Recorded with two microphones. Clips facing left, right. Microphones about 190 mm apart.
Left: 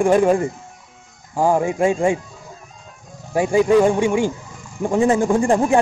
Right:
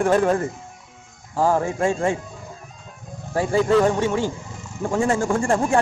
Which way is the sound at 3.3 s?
15° left (ahead or behind).